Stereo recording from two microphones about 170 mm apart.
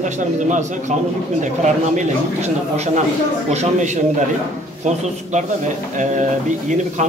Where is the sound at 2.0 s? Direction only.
40° right (ahead or behind).